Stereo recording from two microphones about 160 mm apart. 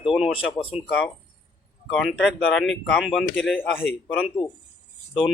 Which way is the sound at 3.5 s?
10° left (ahead or behind).